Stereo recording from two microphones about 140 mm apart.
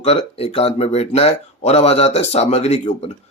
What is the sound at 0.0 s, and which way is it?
Speech, 50° left (ahead or behind).